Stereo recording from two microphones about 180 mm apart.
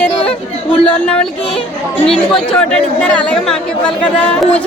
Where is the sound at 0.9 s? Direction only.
5° left (ahead or behind).